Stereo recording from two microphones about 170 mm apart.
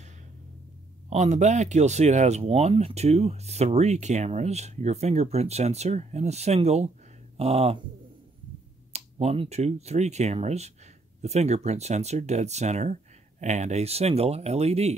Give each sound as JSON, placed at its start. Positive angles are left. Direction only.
{"t": 1.1, "sound": "speech", "side_deg": -40}
{"t": 8.9, "sound": "speech", "side_deg": -40}